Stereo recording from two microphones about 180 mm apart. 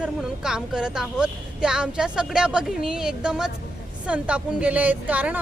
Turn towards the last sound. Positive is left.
turn(degrees=-10)  # may be behind; listen again after turning